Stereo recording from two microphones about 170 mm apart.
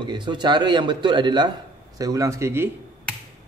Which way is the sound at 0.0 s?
25° right (ahead or behind).